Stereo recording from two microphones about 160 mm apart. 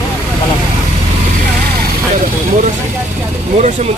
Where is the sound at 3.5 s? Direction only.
45° right (ahead or behind).